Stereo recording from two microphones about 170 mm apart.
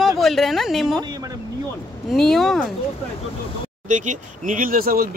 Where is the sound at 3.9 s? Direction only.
45° right (ahead or behind).